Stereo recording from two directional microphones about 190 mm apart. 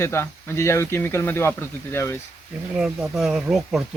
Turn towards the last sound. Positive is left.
turn(degrees=0)  # may be behind; listen again after turning